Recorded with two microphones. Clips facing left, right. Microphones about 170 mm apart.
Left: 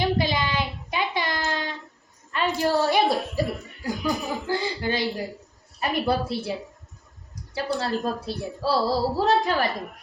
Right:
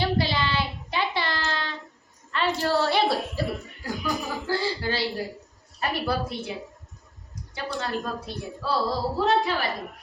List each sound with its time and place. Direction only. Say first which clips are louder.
0.0 s child singing: left 1 dB; 15° left (ahead or behind)
2.3 s a woman's voice: left 1 dB; 15° left (ahead or behind); by 6.5 s 30° left (ahead or behind)
7.5 s speech: left 4 dB; 35° left (ahead or behind)